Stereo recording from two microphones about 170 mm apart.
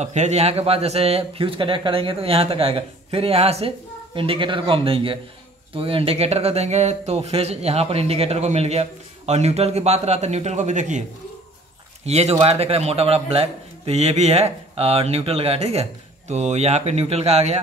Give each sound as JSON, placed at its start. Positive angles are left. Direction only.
{"t": 0.0, "sound": "a man's voice", "side_deg": -45}